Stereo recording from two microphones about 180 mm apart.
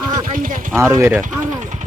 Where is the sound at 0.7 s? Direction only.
15° right (ahead or behind).